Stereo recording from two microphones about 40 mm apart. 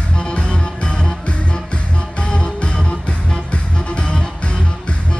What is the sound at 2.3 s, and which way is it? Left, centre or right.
Music, left.